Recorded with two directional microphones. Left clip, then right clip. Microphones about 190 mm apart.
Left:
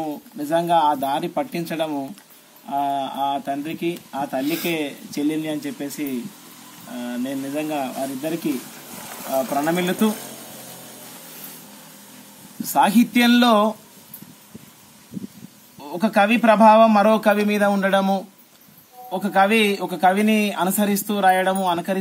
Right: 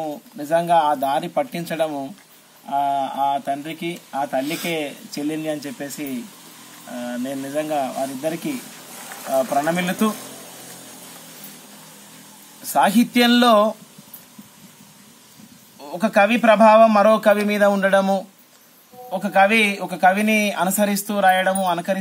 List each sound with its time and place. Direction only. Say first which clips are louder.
0.0 s a man's voice: even; 5° right (ahead or behind)
7.1 s a man's voice: left 1 dB; 5° right (ahead or behind)
9.1 s a sound: right 2 dB; 55° left (ahead or behind)
9.7 s a man's voice: even; centre (ahead or behind)
12.7 s speech: even; 5° right (ahead or behind)
15.8 s a man's voice: right 2 dB; centre (ahead or behind)